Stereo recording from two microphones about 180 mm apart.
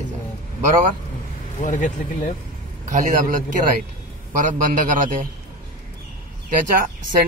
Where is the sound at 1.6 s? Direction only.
45° left (ahead or behind).